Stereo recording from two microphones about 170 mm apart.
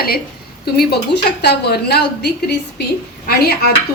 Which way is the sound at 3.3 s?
65° left (ahead or behind).